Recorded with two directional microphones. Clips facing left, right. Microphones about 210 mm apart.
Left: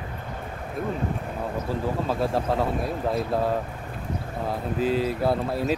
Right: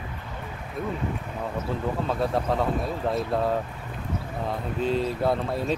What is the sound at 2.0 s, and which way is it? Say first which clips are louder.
Speech: even; centre (ahead or behind).